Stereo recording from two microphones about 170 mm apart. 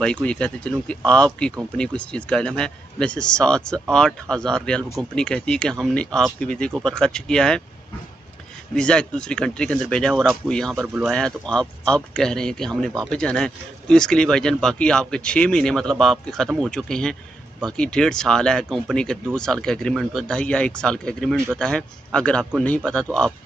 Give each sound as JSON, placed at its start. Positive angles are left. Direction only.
{"t": 0.0, "sound": "speech", "side_deg": 5}
{"t": 8.7, "sound": "speech", "side_deg": 5}